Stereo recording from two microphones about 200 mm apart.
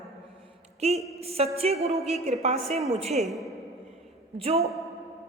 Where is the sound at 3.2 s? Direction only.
Centre (ahead or behind).